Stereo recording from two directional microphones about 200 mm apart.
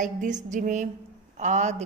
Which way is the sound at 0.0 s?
40° right (ahead or behind).